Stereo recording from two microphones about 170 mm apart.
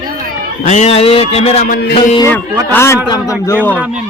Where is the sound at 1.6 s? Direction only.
65° left (ahead or behind).